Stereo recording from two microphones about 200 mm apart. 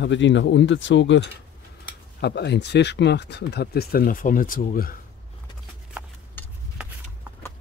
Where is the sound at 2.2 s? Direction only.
55° left (ahead or behind).